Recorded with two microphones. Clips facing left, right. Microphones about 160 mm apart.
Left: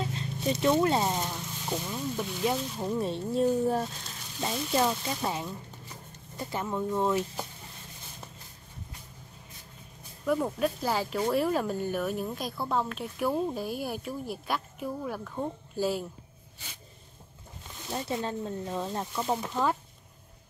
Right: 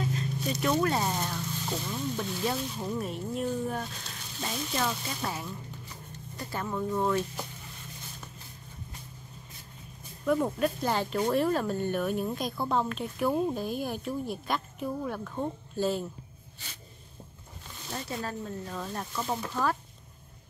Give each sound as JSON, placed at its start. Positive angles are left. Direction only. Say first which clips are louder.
{"t": 0.0, "sound": "speech", "louder": "even", "side_deg": 25}
{"t": 3.0, "sound": "speech", "louder": "left 8 dB", "side_deg": 30}
{"t": 4.4, "sound": "speech", "louder": "left 4 dB", "side_deg": 20}
{"t": 10.2, "sound": "speech", "louder": "right 1 dB", "side_deg": 0}
{"t": 17.9, "sound": "speech", "louder": "left 4 dB", "side_deg": 25}